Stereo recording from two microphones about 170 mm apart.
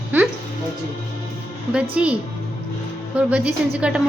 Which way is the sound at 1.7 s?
5° right (ahead or behind).